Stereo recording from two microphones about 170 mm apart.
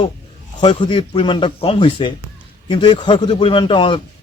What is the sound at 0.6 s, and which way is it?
A man's voice, 30° left (ahead or behind).